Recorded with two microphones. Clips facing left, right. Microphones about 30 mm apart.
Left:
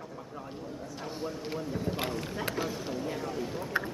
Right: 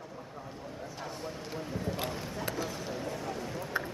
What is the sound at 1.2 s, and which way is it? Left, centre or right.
Speech, left.